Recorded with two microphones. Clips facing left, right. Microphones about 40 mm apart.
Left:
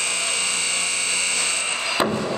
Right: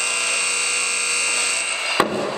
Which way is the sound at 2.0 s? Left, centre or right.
Right.